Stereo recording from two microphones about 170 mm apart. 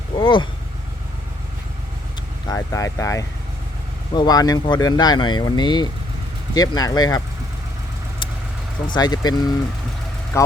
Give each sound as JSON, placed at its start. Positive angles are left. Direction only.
{"t": 0.2, "sound": "speech", "side_deg": 30}
{"t": 2.5, "sound": "speech", "side_deg": 20}
{"t": 8.9, "sound": "speech", "side_deg": 25}